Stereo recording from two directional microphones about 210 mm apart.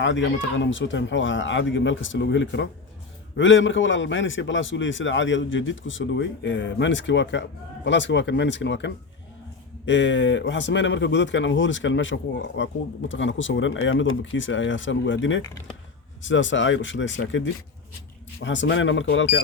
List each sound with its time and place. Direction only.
0.0 s speech: 60° left (ahead or behind)